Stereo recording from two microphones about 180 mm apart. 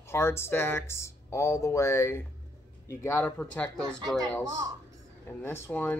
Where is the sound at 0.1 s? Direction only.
15° left (ahead or behind).